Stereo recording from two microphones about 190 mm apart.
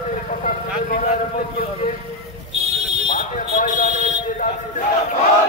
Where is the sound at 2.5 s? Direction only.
35° right (ahead or behind).